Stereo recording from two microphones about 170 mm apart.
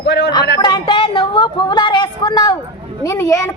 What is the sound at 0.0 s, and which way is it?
Speech, 90° left.